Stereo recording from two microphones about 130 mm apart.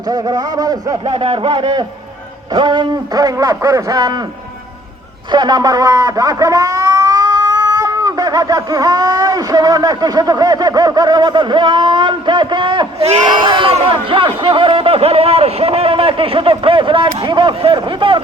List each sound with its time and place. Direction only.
0.1 s a sound: 30° right (ahead or behind)
1.0 s a man's voice: 50° right (ahead or behind)
2.6 s a sound: 35° right (ahead or behind)
5.3 s speech: 35° right (ahead or behind)
13.0 s speech: 55° right (ahead or behind)
13.2 s speech: 35° right (ahead or behind)